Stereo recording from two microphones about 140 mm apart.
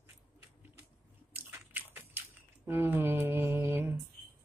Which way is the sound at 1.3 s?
15° right (ahead or behind).